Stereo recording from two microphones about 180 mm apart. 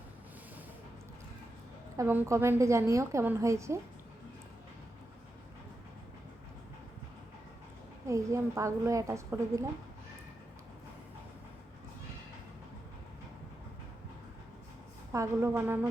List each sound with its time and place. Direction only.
2.0 s a woman's voice: 15° right (ahead or behind)
8.0 s a woman's voice: 15° right (ahead or behind)
15.1 s a woman's voice: 15° right (ahead or behind)